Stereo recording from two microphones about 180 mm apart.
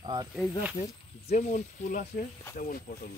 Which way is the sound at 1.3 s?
40° left (ahead or behind).